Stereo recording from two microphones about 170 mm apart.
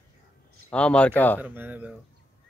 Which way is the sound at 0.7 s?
5° left (ahead or behind).